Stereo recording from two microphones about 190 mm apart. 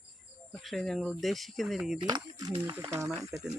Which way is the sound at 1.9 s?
25° right (ahead or behind).